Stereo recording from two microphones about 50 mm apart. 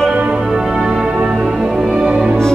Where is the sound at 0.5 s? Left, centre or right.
Centre.